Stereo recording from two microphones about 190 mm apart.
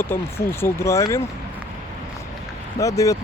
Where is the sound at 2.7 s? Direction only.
15° left (ahead or behind).